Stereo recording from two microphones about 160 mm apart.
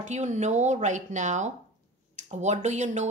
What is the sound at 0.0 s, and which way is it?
A woman's voice, 50° right (ahead or behind).